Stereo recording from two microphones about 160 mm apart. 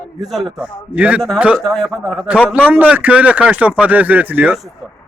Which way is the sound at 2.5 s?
10° right (ahead or behind).